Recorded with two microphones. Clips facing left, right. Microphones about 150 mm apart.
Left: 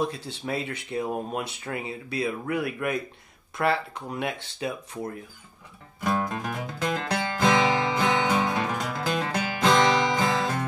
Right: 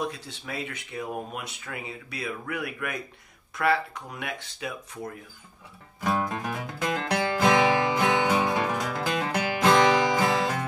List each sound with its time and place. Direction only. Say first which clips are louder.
0.0 s speech: left 4 dB; 30° left (ahead or behind)
6.0 s music: even; 5° right (ahead or behind)